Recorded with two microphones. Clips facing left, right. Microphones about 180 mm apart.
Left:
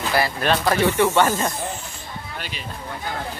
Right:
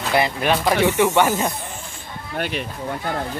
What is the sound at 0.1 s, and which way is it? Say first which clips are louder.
Speech: right 2 dB; 15° right (ahead or behind).